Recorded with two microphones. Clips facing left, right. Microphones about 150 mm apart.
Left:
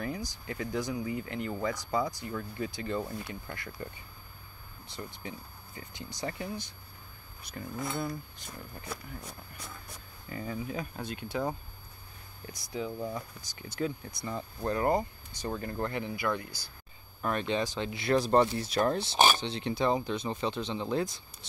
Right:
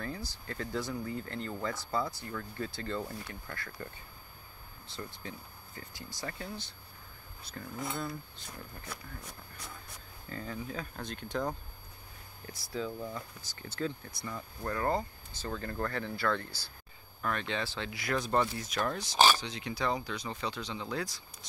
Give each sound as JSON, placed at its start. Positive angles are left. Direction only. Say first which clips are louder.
{"t": 0.0, "sound": "speech", "louder": "left 4 dB", "side_deg": 15}
{"t": 10.3, "sound": "speech", "louder": "left 3 dB", "side_deg": 10}